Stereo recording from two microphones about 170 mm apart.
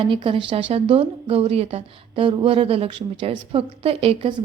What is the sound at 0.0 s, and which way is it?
Speech, 30° right (ahead or behind).